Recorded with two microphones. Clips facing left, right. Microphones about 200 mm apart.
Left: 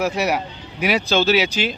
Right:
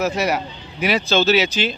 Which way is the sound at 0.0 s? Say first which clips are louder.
Even; 10° left (ahead or behind).